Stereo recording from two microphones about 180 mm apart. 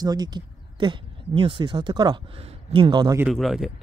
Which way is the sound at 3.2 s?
Centre (ahead or behind).